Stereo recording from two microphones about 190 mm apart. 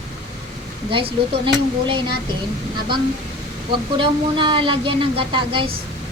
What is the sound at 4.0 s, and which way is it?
A woman's voice, 25° right (ahead or behind).